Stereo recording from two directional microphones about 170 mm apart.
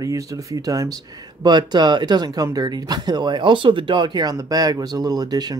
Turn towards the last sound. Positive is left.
turn(degrees=-25)  # may be behind; listen again after turning